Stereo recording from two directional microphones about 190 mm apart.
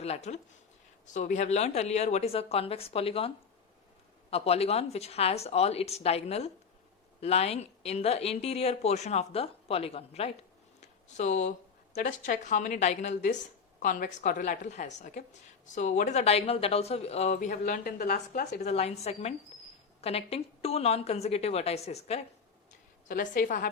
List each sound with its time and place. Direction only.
0.0 s a woman's voice: 35° left (ahead or behind)
10.8 s a sound: 40° left (ahead or behind)
11.9 s a woman's voice: 40° left (ahead or behind)
18.7 s a woman's voice: 35° left (ahead or behind)
23.0 s a woman's voice: 45° left (ahead or behind)